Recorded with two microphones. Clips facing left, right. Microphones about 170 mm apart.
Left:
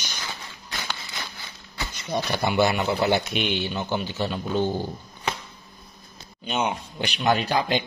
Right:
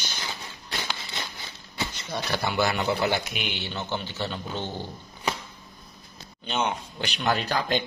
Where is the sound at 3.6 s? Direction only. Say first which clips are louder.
Left 5 dB; 15° left (ahead or behind).